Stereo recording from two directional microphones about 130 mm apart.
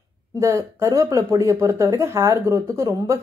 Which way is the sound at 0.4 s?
25° right (ahead or behind).